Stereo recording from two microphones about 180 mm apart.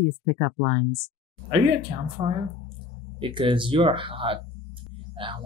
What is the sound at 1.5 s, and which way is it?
Speech, 30° right (ahead or behind).